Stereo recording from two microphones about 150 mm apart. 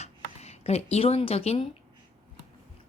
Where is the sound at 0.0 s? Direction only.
45° left (ahead or behind).